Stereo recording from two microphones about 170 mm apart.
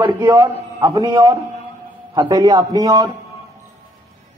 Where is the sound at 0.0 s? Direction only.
25° right (ahead or behind).